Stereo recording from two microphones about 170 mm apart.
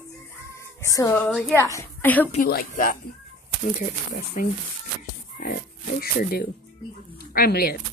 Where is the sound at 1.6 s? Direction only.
15° left (ahead or behind).